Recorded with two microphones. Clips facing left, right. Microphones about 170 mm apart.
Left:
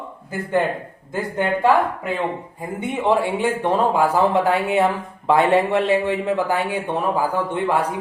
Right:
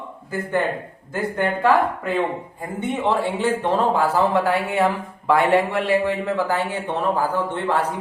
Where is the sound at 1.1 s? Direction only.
15° left (ahead or behind).